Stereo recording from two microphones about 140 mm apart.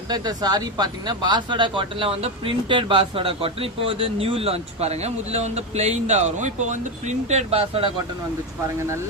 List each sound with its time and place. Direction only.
0.1 s speech: 30° right (ahead or behind)